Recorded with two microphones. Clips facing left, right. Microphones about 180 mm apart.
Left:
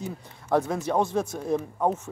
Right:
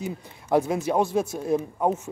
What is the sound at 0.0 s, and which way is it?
Speech, 10° right (ahead or behind).